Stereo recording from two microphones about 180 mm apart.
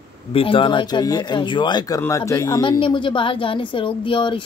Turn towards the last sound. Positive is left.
turn(degrees=25)  # may be behind; listen again after turning